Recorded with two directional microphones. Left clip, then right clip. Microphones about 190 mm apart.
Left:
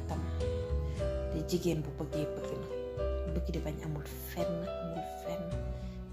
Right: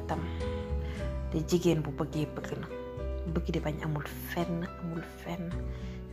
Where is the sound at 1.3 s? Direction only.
20° right (ahead or behind).